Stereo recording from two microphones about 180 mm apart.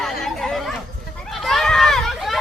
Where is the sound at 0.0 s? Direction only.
Centre (ahead or behind).